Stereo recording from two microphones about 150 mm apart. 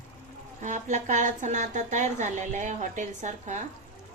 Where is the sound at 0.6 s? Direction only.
55° right (ahead or behind).